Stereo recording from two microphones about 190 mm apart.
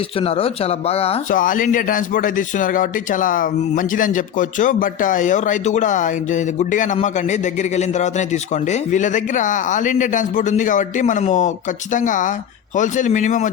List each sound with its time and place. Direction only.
0.2 s a man's voice: 30° left (ahead or behind)
1.3 s a man's voice: 45° left (ahead or behind)